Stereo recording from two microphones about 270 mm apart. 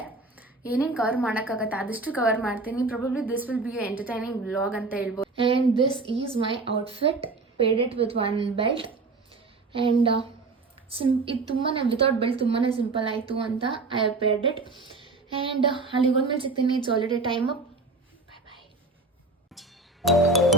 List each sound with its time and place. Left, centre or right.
0.7 s a woman's voice: centre
5.4 s a sound: centre
6.1 s a woman's voice: centre
9.3 s a sound: centre
10.8 s a woman's voice: centre
19.5 s music: centre